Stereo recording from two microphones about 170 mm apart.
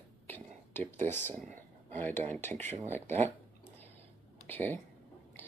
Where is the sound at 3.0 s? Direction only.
40° right (ahead or behind).